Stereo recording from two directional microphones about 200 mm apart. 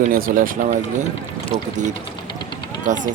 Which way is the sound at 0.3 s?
50° right (ahead or behind).